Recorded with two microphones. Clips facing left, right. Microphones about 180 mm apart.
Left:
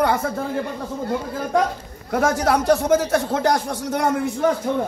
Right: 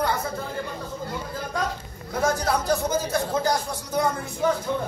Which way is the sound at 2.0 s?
85° left.